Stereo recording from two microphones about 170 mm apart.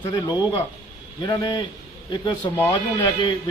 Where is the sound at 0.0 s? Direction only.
25° left (ahead or behind).